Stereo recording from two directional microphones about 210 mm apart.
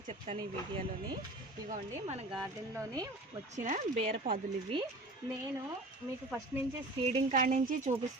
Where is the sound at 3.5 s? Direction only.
35° right (ahead or behind).